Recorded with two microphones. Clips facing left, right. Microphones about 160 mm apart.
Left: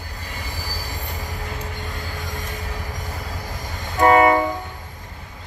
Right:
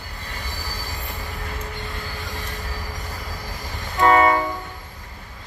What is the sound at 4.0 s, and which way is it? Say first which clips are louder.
Train: left 2 dB; 45° left (ahead or behind).